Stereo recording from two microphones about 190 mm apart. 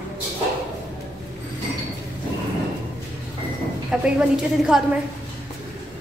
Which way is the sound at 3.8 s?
5° right (ahead or behind).